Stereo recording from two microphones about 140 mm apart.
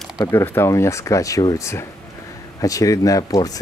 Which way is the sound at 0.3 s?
20° left (ahead or behind).